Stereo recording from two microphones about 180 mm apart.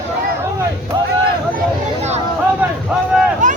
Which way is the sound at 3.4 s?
45° right (ahead or behind).